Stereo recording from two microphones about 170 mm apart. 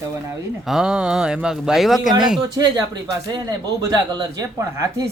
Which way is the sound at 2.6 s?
20° right (ahead or behind).